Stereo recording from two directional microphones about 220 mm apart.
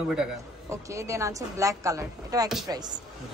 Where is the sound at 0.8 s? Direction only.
15° right (ahead or behind).